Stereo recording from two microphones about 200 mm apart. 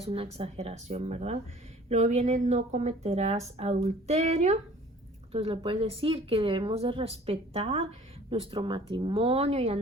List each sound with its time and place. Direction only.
0.0 s speech: 30° right (ahead or behind)